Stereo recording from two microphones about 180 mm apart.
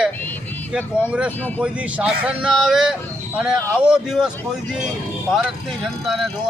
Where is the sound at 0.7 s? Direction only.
5° right (ahead or behind).